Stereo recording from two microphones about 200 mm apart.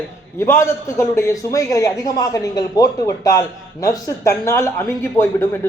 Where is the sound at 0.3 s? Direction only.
15° left (ahead or behind).